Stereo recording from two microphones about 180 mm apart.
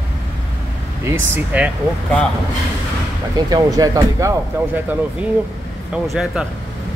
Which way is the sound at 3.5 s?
20° right (ahead or behind).